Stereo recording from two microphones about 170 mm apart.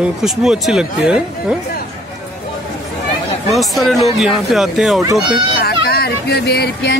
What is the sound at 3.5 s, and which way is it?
Speech, centre (ahead or behind).